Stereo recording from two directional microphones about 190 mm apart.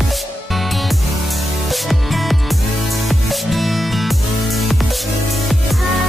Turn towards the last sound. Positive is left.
turn(degrees=0)  # may be behind; listen again after turning